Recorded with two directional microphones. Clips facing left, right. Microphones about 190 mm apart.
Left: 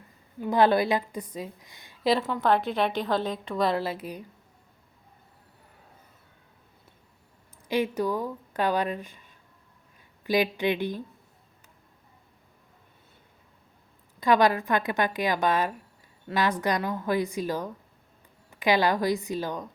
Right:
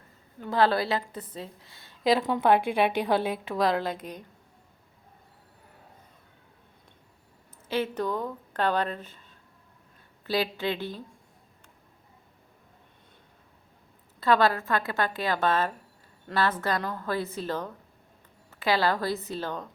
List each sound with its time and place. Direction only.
0.3 s a woman's voice: 15° left (ahead or behind)
2.2 s a woman's voice: 15° right (ahead or behind); by 4.3 s 5° left (ahead or behind)
7.7 s a woman's voice: 10° left (ahead or behind)
10.2 s a woman's voice: 15° left (ahead or behind)
14.2 s a woman's voice: 15° left (ahead or behind)